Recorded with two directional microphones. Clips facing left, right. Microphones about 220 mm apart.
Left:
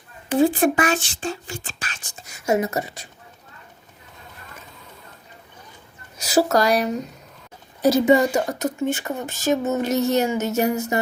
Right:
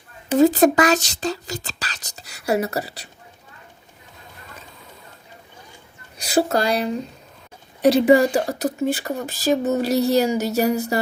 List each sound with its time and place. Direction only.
0.3 s speech: 40° right (ahead or behind)
6.2 s speech: 30° right (ahead or behind)
7.9 s speech: 30° right (ahead or behind)